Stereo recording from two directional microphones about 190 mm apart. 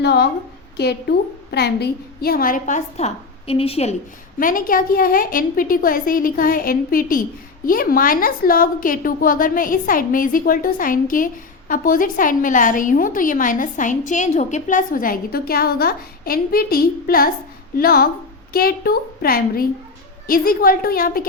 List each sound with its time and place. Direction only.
0.0 s a woman's voice: 60° left (ahead or behind)
1.5 s a woman's voice: 60° left (ahead or behind); by 3.9 s 30° left (ahead or behind)
4.4 s a woman's voice: 45° left (ahead or behind)